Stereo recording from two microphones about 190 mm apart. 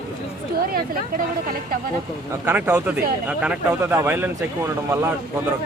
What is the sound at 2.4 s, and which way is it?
Speech, 10° right (ahead or behind).